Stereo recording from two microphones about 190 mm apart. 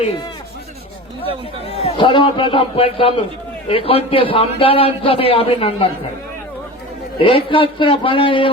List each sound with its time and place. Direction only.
1.6 s a man's voice: 30° left (ahead or behind)
7.2 s a man's voice: 30° left (ahead or behind)